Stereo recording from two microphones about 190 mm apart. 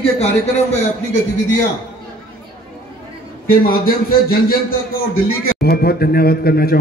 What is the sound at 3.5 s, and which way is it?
Speech, 50° left (ahead or behind).